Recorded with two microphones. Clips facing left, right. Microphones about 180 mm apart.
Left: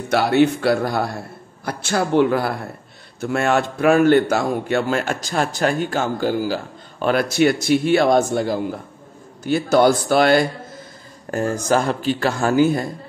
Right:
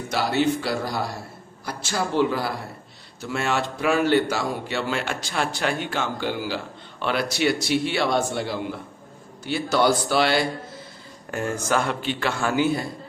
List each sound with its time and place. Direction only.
0.1 s a man's voice: 60° left (ahead or behind)
11.2 s a man's voice: 40° left (ahead or behind)